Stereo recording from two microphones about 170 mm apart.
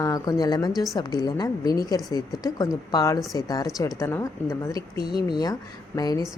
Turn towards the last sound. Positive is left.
turn(degrees=20)  # may be behind; listen again after turning